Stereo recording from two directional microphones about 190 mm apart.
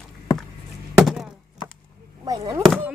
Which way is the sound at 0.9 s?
Centre (ahead or behind).